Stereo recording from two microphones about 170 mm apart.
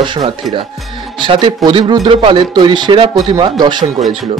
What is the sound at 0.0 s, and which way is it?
Speech, 25° right (ahead or behind).